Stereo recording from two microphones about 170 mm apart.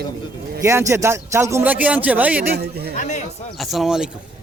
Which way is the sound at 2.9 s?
45° left (ahead or behind).